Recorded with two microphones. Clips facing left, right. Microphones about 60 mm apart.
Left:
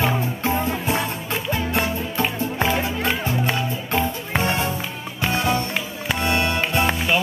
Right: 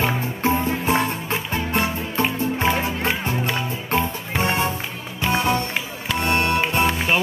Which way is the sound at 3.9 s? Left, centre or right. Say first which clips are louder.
Even; right.